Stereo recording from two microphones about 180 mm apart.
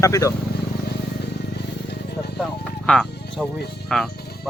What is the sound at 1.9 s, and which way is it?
Music, 65° left (ahead or behind).